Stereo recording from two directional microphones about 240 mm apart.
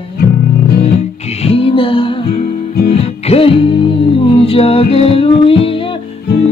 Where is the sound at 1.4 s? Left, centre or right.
Left.